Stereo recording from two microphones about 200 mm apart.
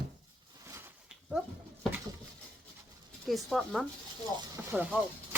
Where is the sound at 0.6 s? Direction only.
15° right (ahead or behind).